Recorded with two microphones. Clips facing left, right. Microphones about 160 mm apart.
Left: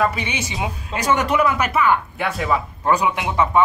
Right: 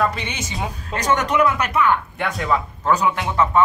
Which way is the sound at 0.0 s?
5° left (ahead or behind).